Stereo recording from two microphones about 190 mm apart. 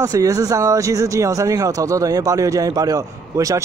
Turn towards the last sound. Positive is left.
turn(degrees=-15)  # may be behind; listen again after turning